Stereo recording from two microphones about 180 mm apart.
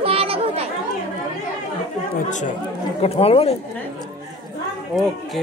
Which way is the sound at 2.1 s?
45° left (ahead or behind).